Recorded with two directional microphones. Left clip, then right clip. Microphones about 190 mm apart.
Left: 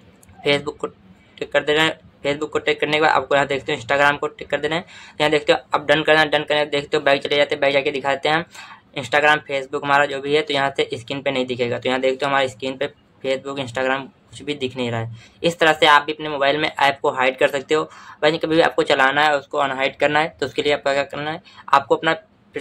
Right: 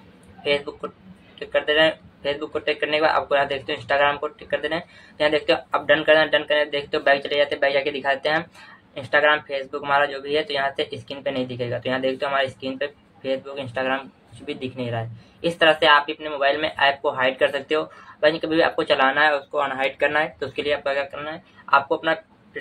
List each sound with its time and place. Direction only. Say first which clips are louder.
0.4 s speech: left 3 dB; 40° left (ahead or behind)